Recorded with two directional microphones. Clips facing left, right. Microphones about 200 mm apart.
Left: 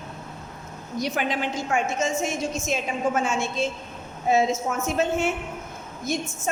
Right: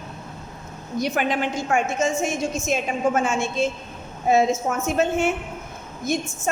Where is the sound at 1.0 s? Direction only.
55° right (ahead or behind).